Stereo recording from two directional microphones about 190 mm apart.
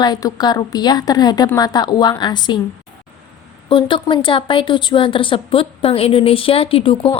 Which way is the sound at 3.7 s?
25° left (ahead or behind).